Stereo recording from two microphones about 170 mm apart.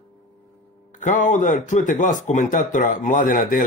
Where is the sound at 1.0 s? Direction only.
50° left (ahead or behind).